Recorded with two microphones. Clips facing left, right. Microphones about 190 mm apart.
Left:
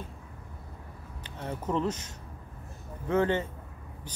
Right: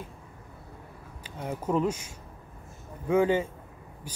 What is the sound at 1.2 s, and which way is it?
Speech, 10° right (ahead or behind).